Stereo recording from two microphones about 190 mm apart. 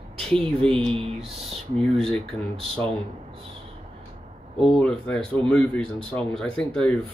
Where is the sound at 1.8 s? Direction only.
Centre (ahead or behind).